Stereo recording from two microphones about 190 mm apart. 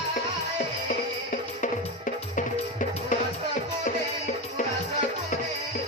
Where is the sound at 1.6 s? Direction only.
40° left (ahead or behind).